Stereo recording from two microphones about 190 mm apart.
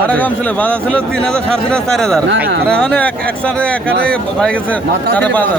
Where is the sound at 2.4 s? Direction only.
55° right (ahead or behind).